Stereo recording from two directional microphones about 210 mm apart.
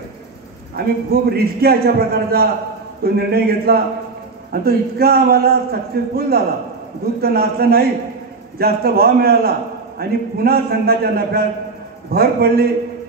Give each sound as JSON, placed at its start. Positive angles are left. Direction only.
{"t": 0.7, "sound": "a man's voice", "side_deg": -45}